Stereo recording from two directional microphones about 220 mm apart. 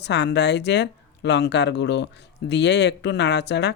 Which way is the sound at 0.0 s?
50° left (ahead or behind).